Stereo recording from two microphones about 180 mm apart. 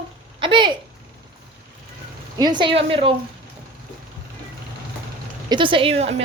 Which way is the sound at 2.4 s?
25° right (ahead or behind).